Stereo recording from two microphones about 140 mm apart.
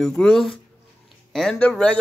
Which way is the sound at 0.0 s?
5° left (ahead or behind).